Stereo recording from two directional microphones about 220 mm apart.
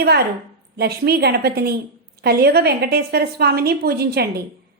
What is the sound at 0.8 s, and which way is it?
A woman's voice, 45° right (ahead or behind).